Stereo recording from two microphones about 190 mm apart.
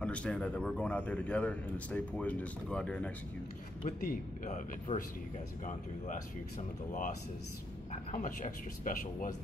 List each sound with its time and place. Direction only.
0.0 s a man's voice: 5° left (ahead or behind)
3.8 s speech: 45° left (ahead or behind)
7.9 s speech: 40° left (ahead or behind)